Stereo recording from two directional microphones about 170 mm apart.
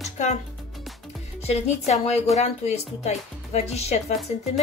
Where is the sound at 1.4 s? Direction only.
40° left (ahead or behind).